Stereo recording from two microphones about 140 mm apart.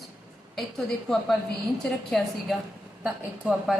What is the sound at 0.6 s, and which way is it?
A woman's voice, centre (ahead or behind).